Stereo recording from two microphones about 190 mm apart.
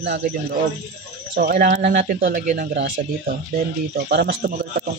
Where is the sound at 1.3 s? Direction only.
50° right (ahead or behind).